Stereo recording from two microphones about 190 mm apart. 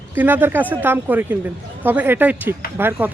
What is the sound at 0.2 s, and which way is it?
Speech, 10° right (ahead or behind).